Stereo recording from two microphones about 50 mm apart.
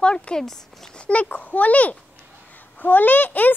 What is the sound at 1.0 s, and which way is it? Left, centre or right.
A child's voice, left.